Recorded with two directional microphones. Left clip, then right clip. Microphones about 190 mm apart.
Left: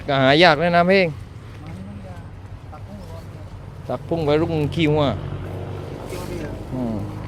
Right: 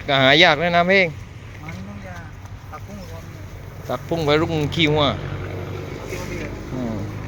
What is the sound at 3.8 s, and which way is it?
Speech, 10° left (ahead or behind).